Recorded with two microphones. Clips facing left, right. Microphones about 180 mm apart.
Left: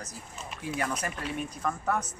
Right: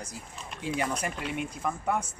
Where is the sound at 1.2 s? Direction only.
10° right (ahead or behind).